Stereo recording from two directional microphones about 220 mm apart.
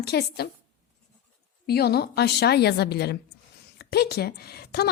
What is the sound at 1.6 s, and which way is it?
Speech, 45° left (ahead or behind).